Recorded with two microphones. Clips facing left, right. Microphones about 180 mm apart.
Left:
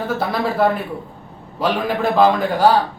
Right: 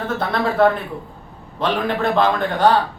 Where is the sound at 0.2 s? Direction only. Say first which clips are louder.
Right 3 dB; 5° left (ahead or behind).